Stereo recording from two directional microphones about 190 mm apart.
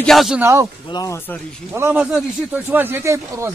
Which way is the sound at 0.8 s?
20° left (ahead or behind).